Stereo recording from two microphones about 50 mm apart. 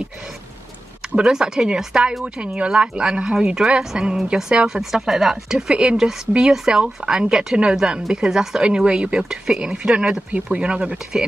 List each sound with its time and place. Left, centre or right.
1.1 s speech: centre
10.3 s speech: right